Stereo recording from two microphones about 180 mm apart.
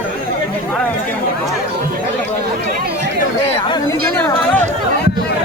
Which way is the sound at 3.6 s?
25° left (ahead or behind).